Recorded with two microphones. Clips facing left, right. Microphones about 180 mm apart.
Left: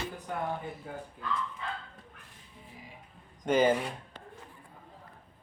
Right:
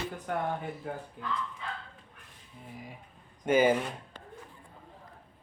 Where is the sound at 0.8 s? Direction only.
65° right (ahead or behind).